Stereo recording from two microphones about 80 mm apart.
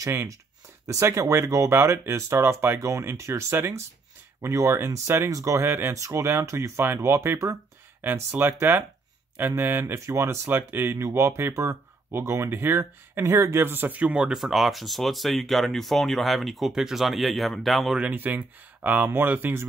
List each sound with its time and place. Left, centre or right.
0.8 s speech: right
5.7 s speech: right
5.9 s speech: right; by 18.0 s centre
18.0 s speech: right